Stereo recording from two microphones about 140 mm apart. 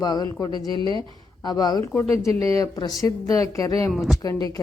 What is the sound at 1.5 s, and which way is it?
Speech, 30° left (ahead or behind).